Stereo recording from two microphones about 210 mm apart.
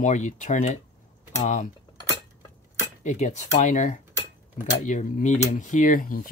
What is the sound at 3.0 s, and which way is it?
Speech, 35° left (ahead or behind).